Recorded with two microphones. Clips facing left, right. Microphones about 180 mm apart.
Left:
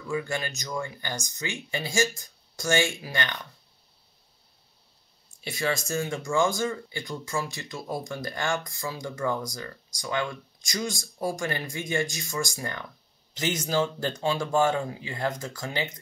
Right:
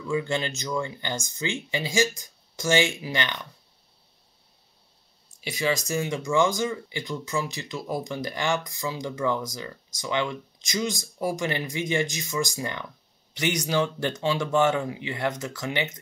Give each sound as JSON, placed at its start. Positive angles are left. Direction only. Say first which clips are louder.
{"t": 0.1, "sound": "speech", "louder": "right 3 dB", "side_deg": -25}
{"t": 5.4, "sound": "speech", "louder": "right 2 dB", "side_deg": -20}
{"t": 14.4, "sound": "speech", "louder": "right 2 dB", "side_deg": -15}